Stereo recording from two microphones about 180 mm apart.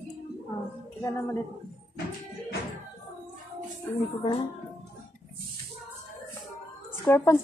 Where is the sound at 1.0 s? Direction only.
15° left (ahead or behind).